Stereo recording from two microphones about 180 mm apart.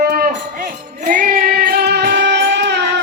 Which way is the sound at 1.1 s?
55° right (ahead or behind).